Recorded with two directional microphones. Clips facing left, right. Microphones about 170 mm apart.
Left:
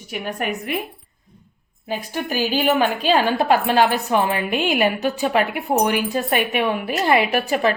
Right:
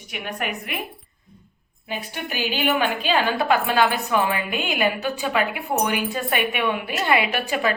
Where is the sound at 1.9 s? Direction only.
40° left (ahead or behind).